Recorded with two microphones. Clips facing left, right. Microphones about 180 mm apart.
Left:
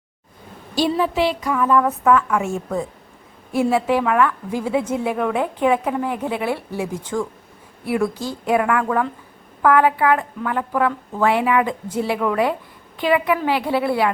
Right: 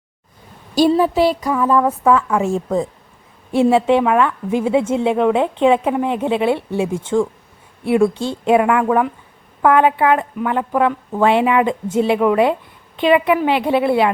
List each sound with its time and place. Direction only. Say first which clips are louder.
0.8 s a woman's voice: right 5 dB; 35° right (ahead or behind)
3.5 s a woman's voice: right 5 dB; 25° right (ahead or behind)